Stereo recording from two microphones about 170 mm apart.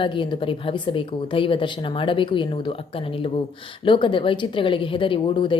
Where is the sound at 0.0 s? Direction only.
30° left (ahead or behind).